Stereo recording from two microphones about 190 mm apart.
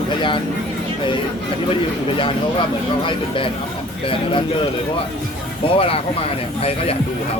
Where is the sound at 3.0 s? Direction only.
25° left (ahead or behind).